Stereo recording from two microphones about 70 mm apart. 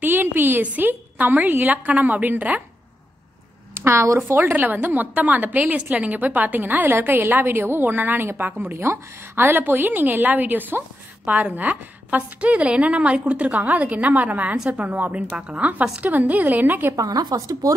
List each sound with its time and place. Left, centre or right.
0.0 s a woman's voice: right
3.7 s a woman's voice: right
16.9 s speech: right